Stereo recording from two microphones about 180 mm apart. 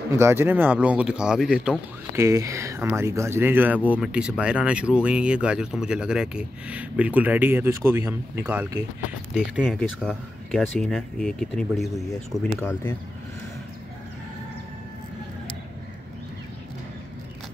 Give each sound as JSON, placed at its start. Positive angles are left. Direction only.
{"t": 0.1, "sound": "speech", "side_deg": -15}
{"t": 2.1, "sound": "speech", "side_deg": -15}
{"t": 9.3, "sound": "speech", "side_deg": 5}